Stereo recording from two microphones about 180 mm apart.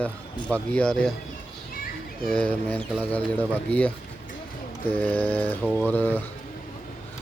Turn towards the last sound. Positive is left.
turn(degrees=10)  # may be behind; listen again after turning